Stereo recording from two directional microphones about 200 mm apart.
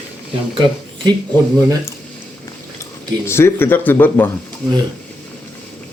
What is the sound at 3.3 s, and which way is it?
Speech, 10° left (ahead or behind).